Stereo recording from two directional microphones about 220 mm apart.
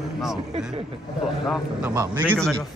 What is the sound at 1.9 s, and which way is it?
Speech, 15° right (ahead or behind).